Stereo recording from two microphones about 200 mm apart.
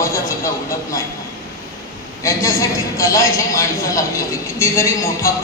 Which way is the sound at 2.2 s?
15° left (ahead or behind).